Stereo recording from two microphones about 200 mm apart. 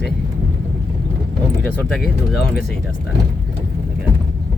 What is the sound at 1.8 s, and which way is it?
Speech, centre (ahead or behind).